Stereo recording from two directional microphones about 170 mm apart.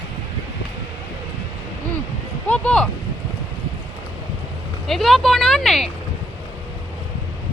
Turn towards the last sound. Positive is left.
turn(degrees=0)  # may be behind; listen again after turning